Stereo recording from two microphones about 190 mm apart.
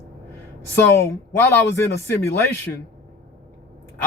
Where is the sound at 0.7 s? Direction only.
15° left (ahead or behind).